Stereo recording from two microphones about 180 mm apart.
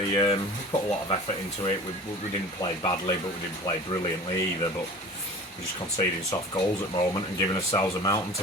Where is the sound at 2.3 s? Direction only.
30° left (ahead or behind).